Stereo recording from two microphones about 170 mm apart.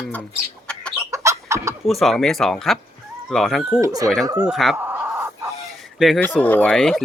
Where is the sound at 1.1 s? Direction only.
15° right (ahead or behind).